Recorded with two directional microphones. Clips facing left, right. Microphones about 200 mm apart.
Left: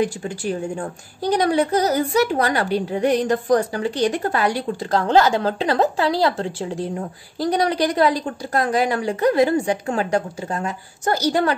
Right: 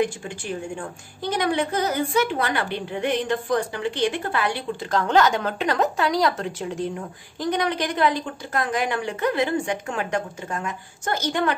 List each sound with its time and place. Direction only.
0.0 s a woman's voice: 40° left (ahead or behind)